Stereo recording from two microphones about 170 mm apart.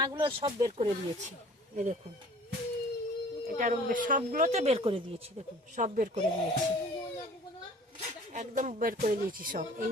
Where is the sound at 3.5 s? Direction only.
50° right (ahead or behind); by 5.4 s 35° right (ahead or behind).